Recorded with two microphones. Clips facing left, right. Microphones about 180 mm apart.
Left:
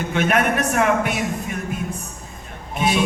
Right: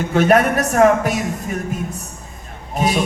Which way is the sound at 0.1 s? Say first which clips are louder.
Right 6 dB; 40° right (ahead or behind).